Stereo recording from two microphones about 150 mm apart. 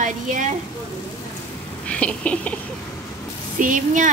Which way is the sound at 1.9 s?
10° left (ahead or behind).